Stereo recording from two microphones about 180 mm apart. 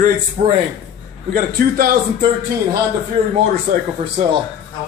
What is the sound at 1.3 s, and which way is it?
Speech, 55° right (ahead or behind).